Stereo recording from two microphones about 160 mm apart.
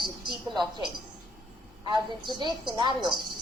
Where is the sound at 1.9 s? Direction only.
30° right (ahead or behind).